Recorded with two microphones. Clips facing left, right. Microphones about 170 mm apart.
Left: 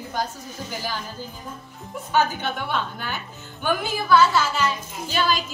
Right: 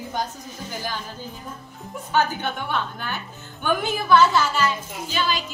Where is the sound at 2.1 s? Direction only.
10° left (ahead or behind).